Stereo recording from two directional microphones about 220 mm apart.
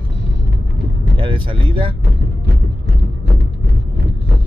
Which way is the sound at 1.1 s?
25° right (ahead or behind).